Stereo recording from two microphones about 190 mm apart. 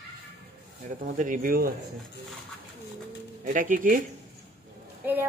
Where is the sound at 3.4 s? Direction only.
45° right (ahead or behind).